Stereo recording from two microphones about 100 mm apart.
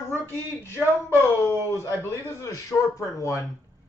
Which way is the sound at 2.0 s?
30° left (ahead or behind).